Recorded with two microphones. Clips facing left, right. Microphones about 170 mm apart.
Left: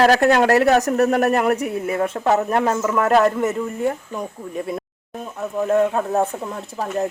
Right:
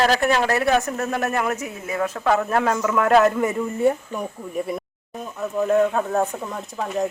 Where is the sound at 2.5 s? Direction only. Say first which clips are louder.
Left 1 dB; 10° left (ahead or behind).